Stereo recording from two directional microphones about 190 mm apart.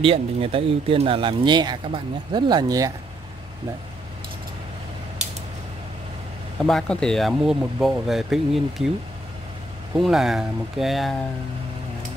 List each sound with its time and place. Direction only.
0.0 s speech: 30° right (ahead or behind)
6.6 s speech: 5° left (ahead or behind)
9.9 s speech: centre (ahead or behind)